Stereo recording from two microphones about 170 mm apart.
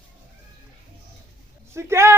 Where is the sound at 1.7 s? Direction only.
15° right (ahead or behind).